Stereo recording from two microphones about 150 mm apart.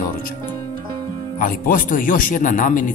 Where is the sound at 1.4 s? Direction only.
65° left (ahead or behind).